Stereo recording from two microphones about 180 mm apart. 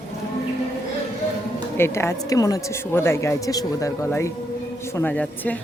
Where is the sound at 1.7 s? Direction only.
15° left (ahead or behind).